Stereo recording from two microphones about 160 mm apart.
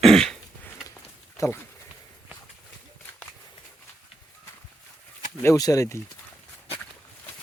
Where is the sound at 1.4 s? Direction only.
20° left (ahead or behind).